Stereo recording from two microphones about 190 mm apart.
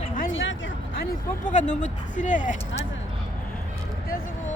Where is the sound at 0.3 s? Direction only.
90° left.